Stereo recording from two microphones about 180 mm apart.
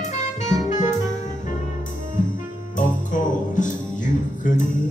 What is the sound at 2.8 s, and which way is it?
Music, 45° left (ahead or behind).